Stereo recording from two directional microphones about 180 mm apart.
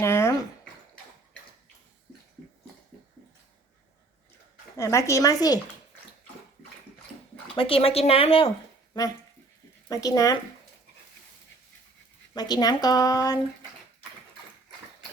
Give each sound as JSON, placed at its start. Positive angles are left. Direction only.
{"t": 0.0, "sound": "a sound", "side_deg": 15}
{"t": 4.8, "sound": "a woman's voice", "side_deg": 15}
{"t": 7.5, "sound": "speech", "side_deg": 30}
{"t": 8.9, "sound": "speech", "side_deg": 20}
{"t": 12.3, "sound": "speech", "side_deg": 20}